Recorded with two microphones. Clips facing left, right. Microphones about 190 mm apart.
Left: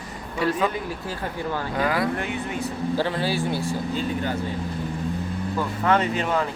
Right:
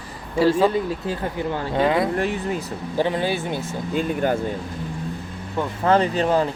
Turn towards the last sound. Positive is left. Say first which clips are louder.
# right 4 dB
turn(degrees=-30)  # may be behind; listen again after turning